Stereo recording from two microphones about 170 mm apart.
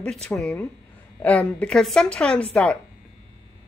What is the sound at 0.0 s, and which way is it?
A woman's voice, 5° left (ahead or behind).